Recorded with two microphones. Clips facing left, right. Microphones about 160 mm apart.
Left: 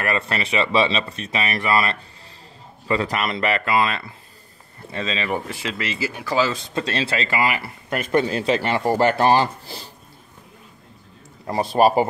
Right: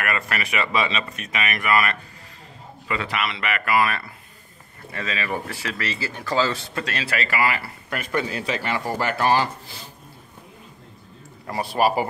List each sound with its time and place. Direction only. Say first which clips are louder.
0.0 s speech: left 3 dB; 25° left (ahead or behind)
2.9 s speech: left 4 dB; 40° left (ahead or behind)
11.7 s speech: left 4 dB; 25° left (ahead or behind)